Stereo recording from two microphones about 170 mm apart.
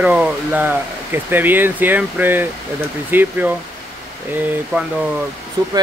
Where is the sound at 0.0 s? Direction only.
10° right (ahead or behind).